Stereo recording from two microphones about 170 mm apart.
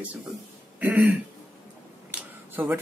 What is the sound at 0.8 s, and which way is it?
Speech, 10° right (ahead or behind).